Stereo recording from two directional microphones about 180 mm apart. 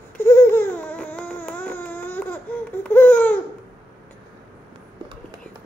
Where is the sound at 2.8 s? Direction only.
10° left (ahead or behind).